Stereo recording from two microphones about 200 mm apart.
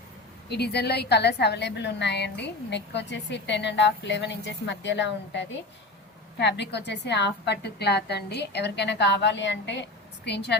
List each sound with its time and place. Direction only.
0.5 s a woman's voice: 55° left (ahead or behind)